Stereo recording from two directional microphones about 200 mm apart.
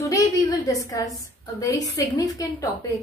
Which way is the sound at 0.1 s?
15° left (ahead or behind).